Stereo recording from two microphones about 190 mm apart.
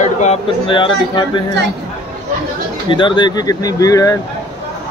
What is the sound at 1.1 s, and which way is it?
Speech, 25° left (ahead or behind).